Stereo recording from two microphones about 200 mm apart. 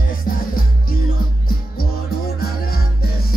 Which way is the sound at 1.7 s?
50° left (ahead or behind).